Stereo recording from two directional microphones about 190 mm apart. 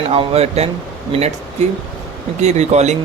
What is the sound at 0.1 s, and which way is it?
Speech, 30° right (ahead or behind).